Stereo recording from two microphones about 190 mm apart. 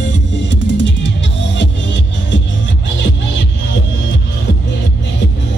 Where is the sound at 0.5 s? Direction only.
70° left (ahead or behind).